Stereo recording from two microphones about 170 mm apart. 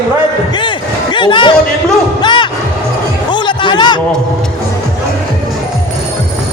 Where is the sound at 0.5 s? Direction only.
25° left (ahead or behind).